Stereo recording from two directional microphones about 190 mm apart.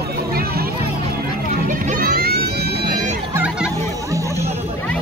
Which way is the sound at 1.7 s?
45° right (ahead or behind).